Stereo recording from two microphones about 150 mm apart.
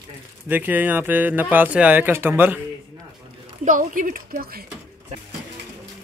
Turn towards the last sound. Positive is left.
turn(degrees=-75)  # may be behind; listen again after turning